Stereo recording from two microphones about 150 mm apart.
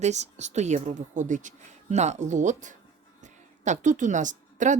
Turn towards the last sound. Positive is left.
turn(degrees=-55)  # may be behind; listen again after turning